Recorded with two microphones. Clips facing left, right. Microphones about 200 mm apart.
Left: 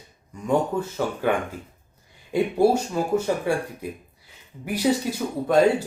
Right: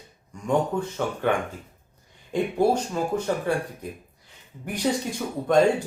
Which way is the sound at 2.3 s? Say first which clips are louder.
Left 3 dB; 10° left (ahead or behind).